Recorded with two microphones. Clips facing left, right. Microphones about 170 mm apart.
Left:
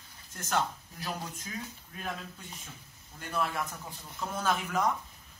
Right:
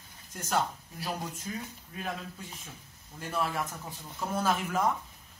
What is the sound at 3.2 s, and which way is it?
Speech, 5° right (ahead or behind).